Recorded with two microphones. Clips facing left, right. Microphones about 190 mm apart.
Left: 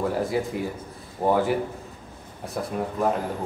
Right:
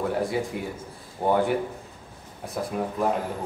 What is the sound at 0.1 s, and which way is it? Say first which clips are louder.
A man's voice: left 1 dB; centre (ahead or behind).